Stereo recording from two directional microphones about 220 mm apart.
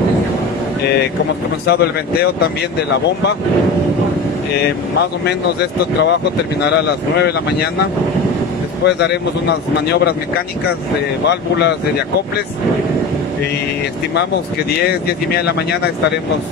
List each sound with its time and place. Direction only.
1.7 s a man's voice: 45° left (ahead or behind)
6.6 s a man's voice: 50° left (ahead or behind)
8.8 s a man's voice: 50° left (ahead or behind)
11.2 s a man's voice: 50° left (ahead or behind)
14.9 s a man's voice: 45° left (ahead or behind)